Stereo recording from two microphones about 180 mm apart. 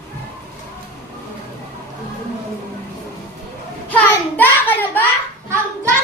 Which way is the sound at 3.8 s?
10° left (ahead or behind).